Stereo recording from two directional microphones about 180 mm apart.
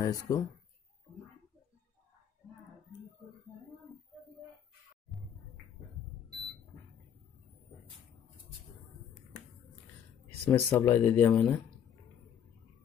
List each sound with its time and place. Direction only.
0.0 s speech: 20° left (ahead or behind)
10.4 s speech: 10° left (ahead or behind)